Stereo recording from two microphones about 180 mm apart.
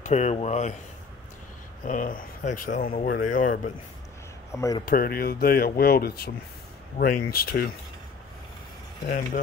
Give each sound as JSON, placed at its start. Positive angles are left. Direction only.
{"t": 0.0, "sound": "speech", "side_deg": 40}
{"t": 1.9, "sound": "speech", "side_deg": 50}
{"t": 4.6, "sound": "speech", "side_deg": 20}
{"t": 4.8, "sound": "speech", "side_deg": 55}
{"t": 9.0, "sound": "speech", "side_deg": 60}